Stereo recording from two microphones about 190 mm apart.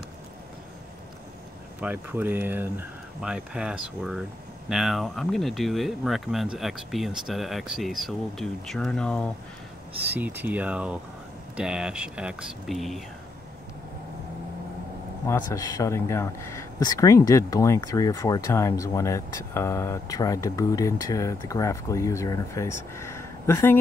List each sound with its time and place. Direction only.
1.8 s speech: 10° right (ahead or behind)
10.1 s speech: 10° right (ahead or behind)
15.2 s speech: 20° left (ahead or behind)